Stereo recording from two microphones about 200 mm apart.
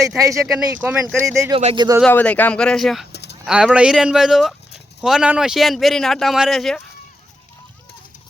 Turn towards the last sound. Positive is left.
turn(degrees=0)  # may be behind; listen again after turning